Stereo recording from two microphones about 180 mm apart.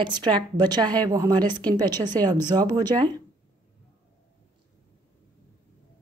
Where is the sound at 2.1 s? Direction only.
10° left (ahead or behind).